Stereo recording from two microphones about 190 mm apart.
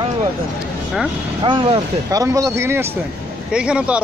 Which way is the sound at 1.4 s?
25° right (ahead or behind).